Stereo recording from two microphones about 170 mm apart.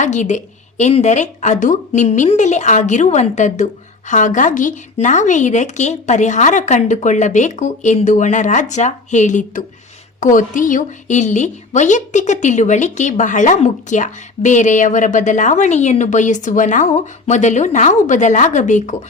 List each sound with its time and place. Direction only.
0.0 s a woman's voice: 45° left (ahead or behind)